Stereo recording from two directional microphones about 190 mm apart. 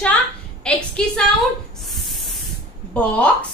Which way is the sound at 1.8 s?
Centre (ahead or behind).